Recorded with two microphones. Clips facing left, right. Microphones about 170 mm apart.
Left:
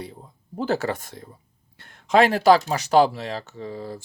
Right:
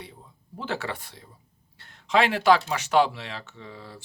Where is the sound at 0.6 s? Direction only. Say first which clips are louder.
Left 7 dB; 40° left (ahead or behind).